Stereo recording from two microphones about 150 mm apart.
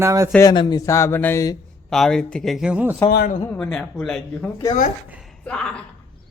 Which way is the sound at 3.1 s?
90° left.